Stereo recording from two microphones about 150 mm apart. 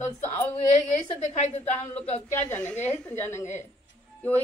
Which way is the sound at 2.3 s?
10° left (ahead or behind).